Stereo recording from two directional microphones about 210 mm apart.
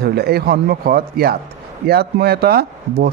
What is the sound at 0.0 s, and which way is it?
A man's voice, 50° right (ahead or behind).